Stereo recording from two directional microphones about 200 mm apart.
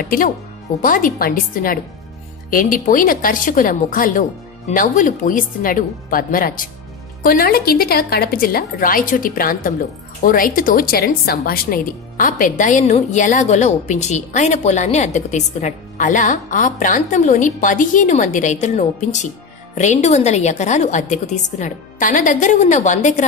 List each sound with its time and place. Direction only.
0.8 s a woman's voice: 40° left (ahead or behind)